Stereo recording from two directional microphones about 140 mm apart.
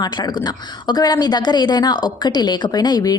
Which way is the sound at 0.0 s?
30° left (ahead or behind).